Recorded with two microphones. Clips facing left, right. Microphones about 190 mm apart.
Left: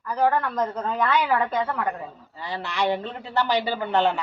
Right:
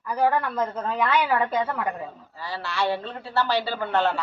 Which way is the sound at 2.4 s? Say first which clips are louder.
Left 1 dB; 20° left (ahead or behind).